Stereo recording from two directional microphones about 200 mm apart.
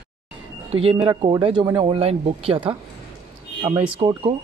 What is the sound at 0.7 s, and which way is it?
Speech, 30° right (ahead or behind).